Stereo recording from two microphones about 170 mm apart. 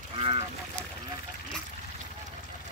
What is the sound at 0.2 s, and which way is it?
Goose, 35° right (ahead or behind).